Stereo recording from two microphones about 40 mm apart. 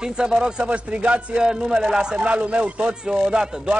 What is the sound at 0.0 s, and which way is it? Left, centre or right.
Speech, centre.